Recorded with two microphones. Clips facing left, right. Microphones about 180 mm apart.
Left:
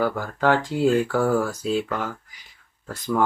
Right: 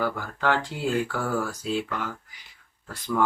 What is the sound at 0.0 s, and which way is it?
Speech, 45° left (ahead or behind).